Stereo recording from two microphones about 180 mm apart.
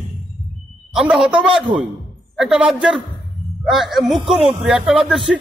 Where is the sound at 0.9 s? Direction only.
5° right (ahead or behind).